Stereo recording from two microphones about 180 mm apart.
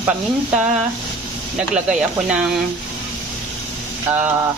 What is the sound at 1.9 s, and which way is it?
Speech, 5° right (ahead or behind).